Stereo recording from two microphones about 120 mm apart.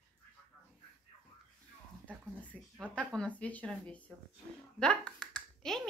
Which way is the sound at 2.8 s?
10° left (ahead or behind).